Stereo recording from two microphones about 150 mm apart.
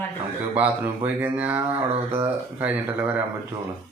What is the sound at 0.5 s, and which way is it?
Speech, 10° right (ahead or behind).